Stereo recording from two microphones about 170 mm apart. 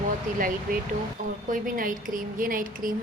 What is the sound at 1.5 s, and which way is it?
Speech, 55° right (ahead or behind).